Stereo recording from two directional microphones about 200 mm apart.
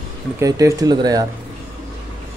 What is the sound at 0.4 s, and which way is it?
Speech, 15° right (ahead or behind).